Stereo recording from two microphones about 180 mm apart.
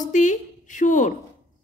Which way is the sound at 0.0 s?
45° left (ahead or behind).